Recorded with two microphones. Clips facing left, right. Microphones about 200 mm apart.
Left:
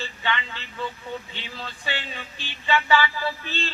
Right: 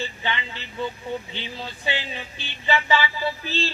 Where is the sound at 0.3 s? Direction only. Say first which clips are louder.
Left 1 dB; 30° right (ahead or behind).